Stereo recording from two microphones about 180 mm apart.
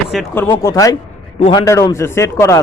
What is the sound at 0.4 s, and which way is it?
A man's voice, 20° left (ahead or behind).